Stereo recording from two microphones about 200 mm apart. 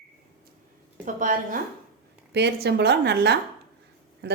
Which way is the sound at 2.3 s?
55° right (ahead or behind).